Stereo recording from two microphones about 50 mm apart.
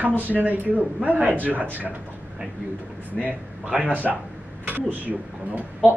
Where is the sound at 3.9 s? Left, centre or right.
Right.